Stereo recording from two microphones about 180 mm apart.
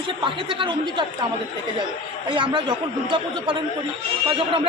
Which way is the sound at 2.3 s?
25° right (ahead or behind).